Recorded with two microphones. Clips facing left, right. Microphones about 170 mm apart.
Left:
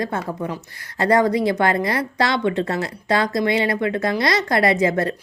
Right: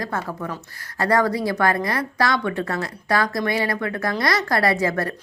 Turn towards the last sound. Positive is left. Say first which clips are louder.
# left 3 dB
turn(degrees=20)  # may be behind; listen again after turning